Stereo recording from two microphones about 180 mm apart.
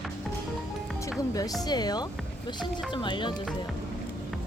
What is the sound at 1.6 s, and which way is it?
Speech, 20° left (ahead or behind).